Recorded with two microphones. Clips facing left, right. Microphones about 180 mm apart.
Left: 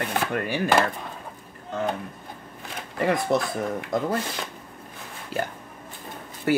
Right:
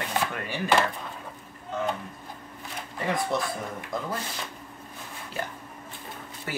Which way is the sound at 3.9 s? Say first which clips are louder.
Left 7 dB; 40° left (ahead or behind).